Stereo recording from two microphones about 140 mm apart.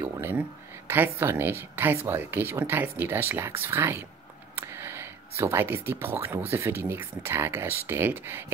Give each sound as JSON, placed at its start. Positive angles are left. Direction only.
{"t": 0.0, "sound": "speech", "side_deg": -15}